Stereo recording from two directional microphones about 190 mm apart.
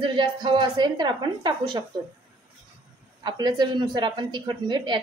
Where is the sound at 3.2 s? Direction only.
20° right (ahead or behind).